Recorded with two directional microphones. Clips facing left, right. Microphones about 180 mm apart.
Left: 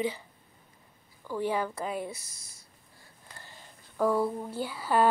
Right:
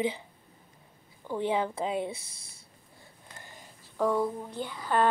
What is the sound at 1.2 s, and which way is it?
Speech, 20° right (ahead or behind).